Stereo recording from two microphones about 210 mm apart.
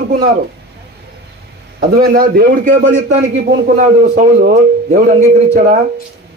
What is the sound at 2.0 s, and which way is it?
A man's voice, 45° right (ahead or behind).